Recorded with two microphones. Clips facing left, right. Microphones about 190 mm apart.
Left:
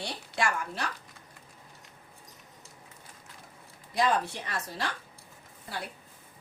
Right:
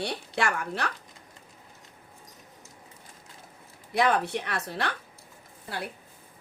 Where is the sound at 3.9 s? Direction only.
65° right (ahead or behind).